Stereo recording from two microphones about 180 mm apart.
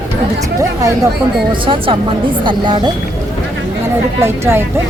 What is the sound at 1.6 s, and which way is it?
Speech, 30° right (ahead or behind).